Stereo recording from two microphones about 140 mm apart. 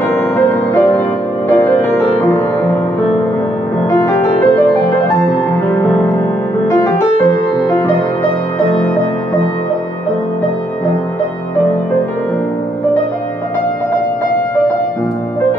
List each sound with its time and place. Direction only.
1.5 s music: 15° left (ahead or behind)
4.0 s music: 20° left (ahead or behind)